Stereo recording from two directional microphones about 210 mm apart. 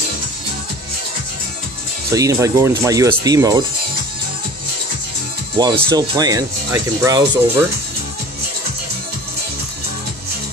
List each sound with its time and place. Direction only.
2.1 s speech: 15° right (ahead or behind)
5.6 s speech: 20° right (ahead or behind)